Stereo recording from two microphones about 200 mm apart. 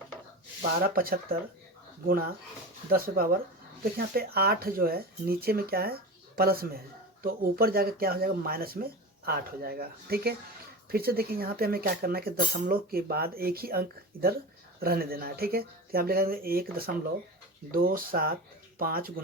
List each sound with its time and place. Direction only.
0.8 s speech: 45° right (ahead or behind)